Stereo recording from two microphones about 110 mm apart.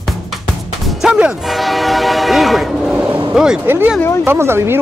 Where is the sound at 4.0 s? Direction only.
25° left (ahead or behind).